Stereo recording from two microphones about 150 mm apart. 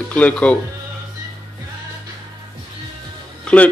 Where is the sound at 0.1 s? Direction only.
10° left (ahead or behind).